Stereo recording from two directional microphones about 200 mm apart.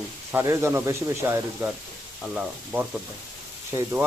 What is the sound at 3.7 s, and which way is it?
Speech, 20° right (ahead or behind).